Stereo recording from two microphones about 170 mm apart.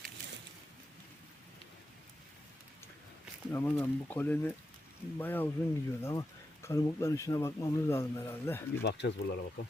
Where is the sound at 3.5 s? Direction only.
15° left (ahead or behind).